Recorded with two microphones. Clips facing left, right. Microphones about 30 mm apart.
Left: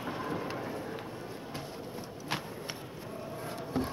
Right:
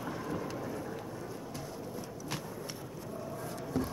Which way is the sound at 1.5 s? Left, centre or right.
Left.